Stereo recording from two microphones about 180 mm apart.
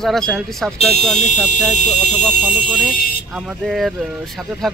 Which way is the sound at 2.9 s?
55° left (ahead or behind).